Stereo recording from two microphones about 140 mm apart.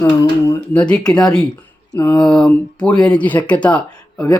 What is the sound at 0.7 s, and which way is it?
Speech, 10° left (ahead or behind).